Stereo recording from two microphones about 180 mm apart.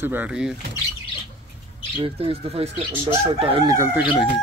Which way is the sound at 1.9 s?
30° right (ahead or behind).